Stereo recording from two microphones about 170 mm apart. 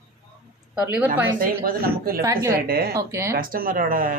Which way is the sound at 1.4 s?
60° right (ahead or behind).